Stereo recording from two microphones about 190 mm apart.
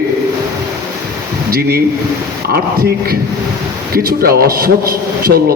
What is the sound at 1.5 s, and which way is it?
A man's voice, 55° right (ahead or behind).